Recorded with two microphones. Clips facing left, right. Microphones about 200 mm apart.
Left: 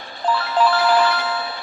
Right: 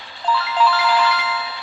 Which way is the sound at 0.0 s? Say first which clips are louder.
Left 1 dB; 50° left (ahead or behind).